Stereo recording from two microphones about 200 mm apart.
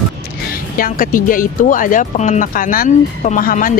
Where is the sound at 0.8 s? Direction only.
45° left (ahead or behind).